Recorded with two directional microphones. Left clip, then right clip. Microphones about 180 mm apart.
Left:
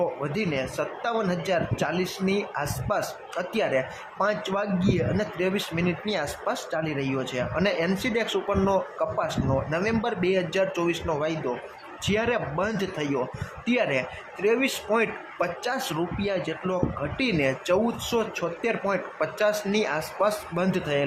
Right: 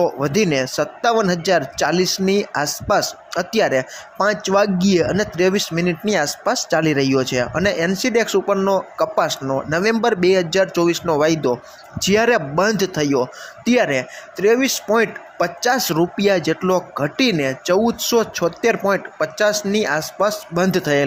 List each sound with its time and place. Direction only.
0.3 s speech: 35° right (ahead or behind)
17.3 s speech: 20° right (ahead or behind)